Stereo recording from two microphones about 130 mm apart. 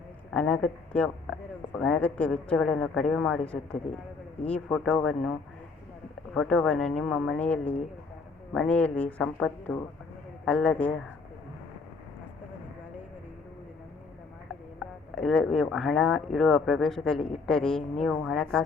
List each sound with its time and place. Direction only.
0.3 s a woman's voice: 5° left (ahead or behind)
6.3 s a woman's voice: 5° left (ahead or behind)
14.8 s speech: 5° left (ahead or behind)